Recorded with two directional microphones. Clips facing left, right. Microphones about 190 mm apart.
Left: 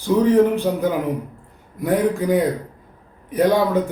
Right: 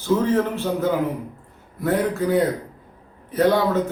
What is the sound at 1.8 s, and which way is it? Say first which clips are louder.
A man's voice: left 2 dB; 15° left (ahead or behind).